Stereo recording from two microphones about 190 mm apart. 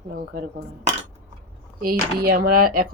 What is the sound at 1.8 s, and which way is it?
Speech, 50° right (ahead or behind).